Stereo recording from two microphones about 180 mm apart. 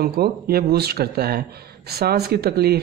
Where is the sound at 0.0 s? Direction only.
60° right (ahead or behind).